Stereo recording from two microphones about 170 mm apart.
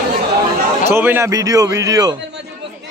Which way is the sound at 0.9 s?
15° right (ahead or behind).